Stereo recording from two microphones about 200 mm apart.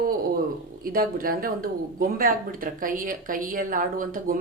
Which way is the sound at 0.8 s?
45° right (ahead or behind).